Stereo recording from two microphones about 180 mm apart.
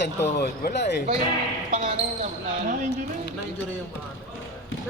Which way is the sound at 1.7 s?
40° right (ahead or behind).